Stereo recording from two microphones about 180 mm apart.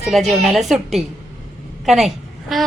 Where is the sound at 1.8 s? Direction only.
Centre (ahead or behind).